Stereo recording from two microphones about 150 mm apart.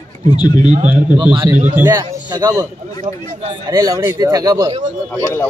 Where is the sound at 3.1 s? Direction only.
40° right (ahead or behind).